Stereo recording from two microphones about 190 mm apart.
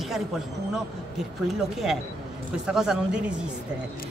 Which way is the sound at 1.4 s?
Centre (ahead or behind).